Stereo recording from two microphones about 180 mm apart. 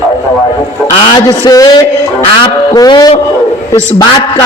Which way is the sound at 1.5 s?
20° left (ahead or behind).